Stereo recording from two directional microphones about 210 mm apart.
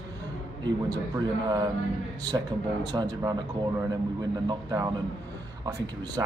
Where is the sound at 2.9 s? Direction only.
20° right (ahead or behind).